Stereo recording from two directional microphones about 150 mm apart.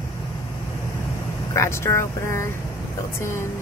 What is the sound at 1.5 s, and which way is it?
Speech, 15° left (ahead or behind).